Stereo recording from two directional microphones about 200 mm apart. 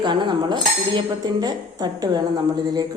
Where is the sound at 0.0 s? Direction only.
25° right (ahead or behind).